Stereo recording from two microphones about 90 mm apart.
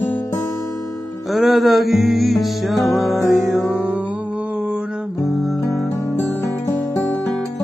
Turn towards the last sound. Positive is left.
turn(degrees=0)  # may be behind; listen again after turning